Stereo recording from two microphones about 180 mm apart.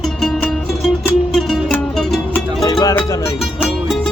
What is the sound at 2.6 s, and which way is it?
Music, 20° left (ahead or behind).